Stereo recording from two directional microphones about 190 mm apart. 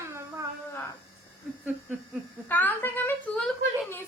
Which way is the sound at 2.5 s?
10° left (ahead or behind).